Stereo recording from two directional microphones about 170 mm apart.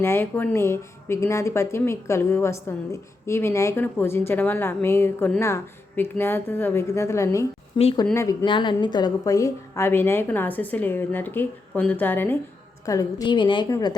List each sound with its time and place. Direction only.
0.0 s a woman's voice: 15° left (ahead or behind)
8.1 s speech: 15° left (ahead or behind)
8.4 s a woman's voice: 30° left (ahead or behind)